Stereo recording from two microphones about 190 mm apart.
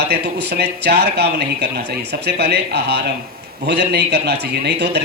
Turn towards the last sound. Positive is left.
turn(degrees=-60)  # may be behind; listen again after turning